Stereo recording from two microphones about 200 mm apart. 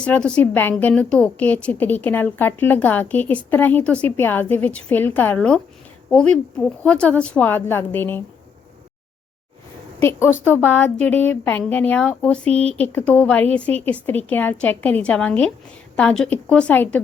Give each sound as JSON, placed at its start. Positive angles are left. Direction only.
{"t": 0.0, "sound": "a woman's voice", "side_deg": 5}
{"t": 10.0, "sound": "a woman's voice", "side_deg": 10}